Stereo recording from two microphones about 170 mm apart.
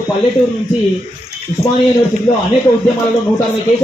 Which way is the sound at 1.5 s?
25° right (ahead or behind).